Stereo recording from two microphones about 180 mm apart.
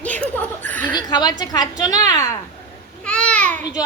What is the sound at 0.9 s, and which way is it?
A woman's voice, 25° left (ahead or behind).